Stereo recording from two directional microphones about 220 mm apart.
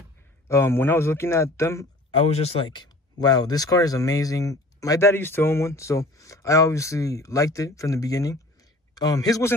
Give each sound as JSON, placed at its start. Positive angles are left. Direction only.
{"t": 0.5, "sound": "speech", "side_deg": 10}